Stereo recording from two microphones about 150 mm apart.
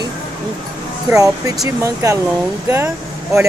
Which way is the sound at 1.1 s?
20° right (ahead or behind).